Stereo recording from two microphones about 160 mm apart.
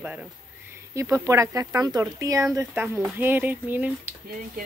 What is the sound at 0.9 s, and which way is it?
Speech, 20° right (ahead or behind).